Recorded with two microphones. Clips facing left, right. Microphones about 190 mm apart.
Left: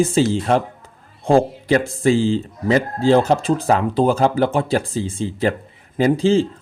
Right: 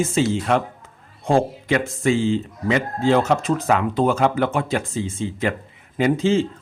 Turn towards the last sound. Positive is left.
turn(degrees=35)  # may be behind; listen again after turning